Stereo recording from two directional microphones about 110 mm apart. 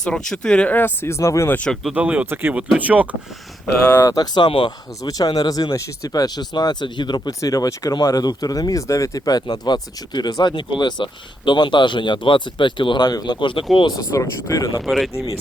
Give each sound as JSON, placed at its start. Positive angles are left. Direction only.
{"t": 0.0, "sound": "speech", "side_deg": 5}
{"t": 1.5, "sound": "speech", "side_deg": 10}
{"t": 1.9, "sound": "speech", "side_deg": -10}
{"t": 3.9, "sound": "speech", "side_deg": 30}
{"t": 5.0, "sound": "speech", "side_deg": 35}
{"t": 14.1, "sound": "speech", "side_deg": 30}
{"t": 14.8, "sound": "speech", "side_deg": 0}